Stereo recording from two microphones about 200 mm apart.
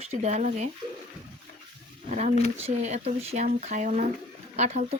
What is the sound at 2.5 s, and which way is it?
Speech, 35° right (ahead or behind).